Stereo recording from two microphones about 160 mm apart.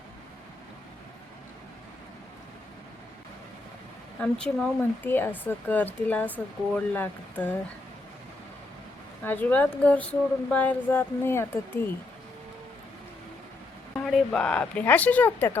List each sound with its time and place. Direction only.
4.2 s speech: 5° left (ahead or behind)
9.2 s speech: 10° left (ahead or behind)
14.0 s speech: centre (ahead or behind)